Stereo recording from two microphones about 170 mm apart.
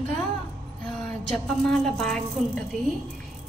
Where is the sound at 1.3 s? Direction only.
5° left (ahead or behind).